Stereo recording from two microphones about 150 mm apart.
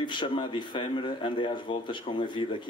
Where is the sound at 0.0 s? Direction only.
30° left (ahead or behind).